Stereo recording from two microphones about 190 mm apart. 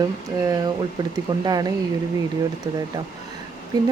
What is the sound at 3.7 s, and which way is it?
Speech, 20° right (ahead or behind).